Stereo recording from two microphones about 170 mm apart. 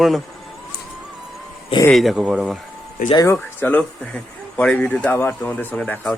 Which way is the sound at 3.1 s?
20° left (ahead or behind).